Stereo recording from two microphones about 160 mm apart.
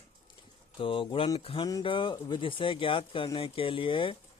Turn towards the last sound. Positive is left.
turn(degrees=30)  # may be behind; listen again after turning